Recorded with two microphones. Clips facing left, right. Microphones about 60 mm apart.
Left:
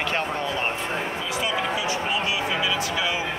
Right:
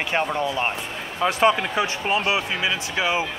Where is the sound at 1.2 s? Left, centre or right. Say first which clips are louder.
Right 8 dB; right.